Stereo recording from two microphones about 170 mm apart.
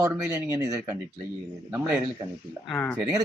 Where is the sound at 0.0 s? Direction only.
15° right (ahead or behind).